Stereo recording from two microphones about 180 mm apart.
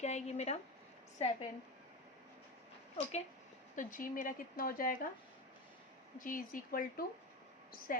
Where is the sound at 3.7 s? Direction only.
45° left (ahead or behind).